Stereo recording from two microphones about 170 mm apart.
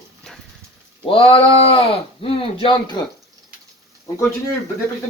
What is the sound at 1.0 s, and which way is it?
Speech, 30° left (ahead or behind).